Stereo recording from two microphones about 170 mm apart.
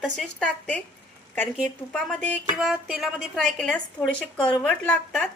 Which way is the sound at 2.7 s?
5° right (ahead or behind).